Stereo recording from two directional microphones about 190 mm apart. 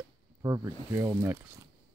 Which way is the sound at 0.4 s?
15° right (ahead or behind).